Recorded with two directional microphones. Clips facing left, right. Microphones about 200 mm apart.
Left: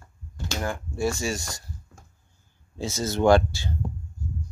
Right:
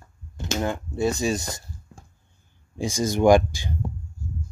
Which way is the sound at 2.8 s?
15° right (ahead or behind).